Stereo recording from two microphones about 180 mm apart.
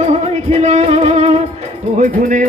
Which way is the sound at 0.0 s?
35° right (ahead or behind).